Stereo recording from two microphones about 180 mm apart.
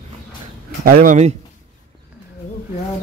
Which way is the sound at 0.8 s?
50° right (ahead or behind).